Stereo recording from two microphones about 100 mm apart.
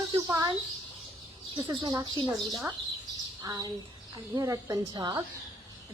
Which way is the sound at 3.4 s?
40° right (ahead or behind).